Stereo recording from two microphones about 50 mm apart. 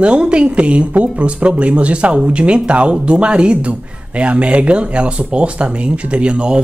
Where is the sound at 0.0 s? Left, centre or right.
Right.